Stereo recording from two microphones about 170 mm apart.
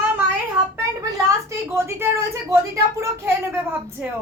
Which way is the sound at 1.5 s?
15° right (ahead or behind).